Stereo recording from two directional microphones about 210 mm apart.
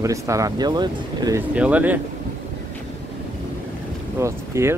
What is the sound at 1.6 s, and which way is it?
Speech, 5° right (ahead or behind).